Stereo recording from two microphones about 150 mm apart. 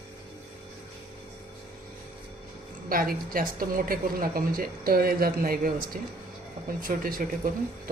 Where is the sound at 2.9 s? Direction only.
85° right.